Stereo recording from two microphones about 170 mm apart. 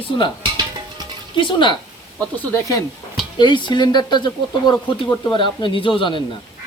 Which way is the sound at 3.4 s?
25° left (ahead or behind).